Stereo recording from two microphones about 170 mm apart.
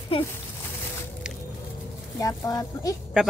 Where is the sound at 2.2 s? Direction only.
20° left (ahead or behind).